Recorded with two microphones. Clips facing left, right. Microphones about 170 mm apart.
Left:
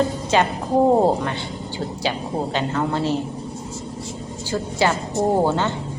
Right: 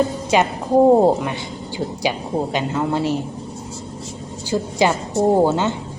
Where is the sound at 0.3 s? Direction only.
15° right (ahead or behind).